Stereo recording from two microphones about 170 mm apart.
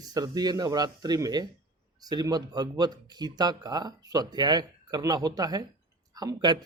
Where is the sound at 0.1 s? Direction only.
25° right (ahead or behind).